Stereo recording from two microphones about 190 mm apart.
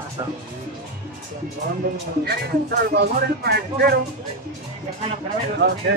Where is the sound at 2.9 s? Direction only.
60° right (ahead or behind).